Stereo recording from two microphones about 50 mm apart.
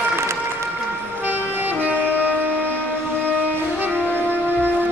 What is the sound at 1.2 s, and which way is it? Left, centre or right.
Vehicle, right.